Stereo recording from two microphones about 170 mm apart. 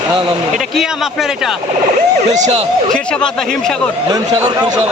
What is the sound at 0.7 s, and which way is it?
Speech, centre (ahead or behind).